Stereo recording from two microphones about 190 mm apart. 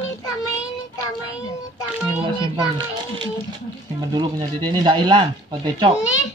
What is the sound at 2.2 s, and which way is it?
Speech, 25° right (ahead or behind).